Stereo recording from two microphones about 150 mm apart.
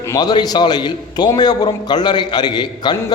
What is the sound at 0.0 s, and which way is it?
A man's voice, 25° left (ahead or behind).